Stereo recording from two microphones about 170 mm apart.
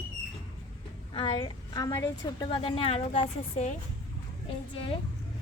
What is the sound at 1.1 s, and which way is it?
Speech, 35° left (ahead or behind).